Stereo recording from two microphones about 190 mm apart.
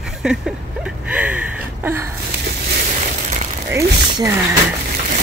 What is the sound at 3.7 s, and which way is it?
Speech, 15° right (ahead or behind).